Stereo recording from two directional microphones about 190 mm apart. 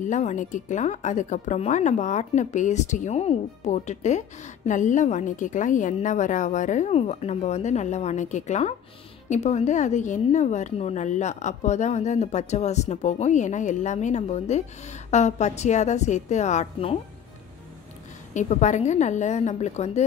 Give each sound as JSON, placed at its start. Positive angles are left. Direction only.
{"t": 0.0, "sound": "a woman's voice", "side_deg": 40}
{"t": 18.3, "sound": "a woman's voice", "side_deg": 40}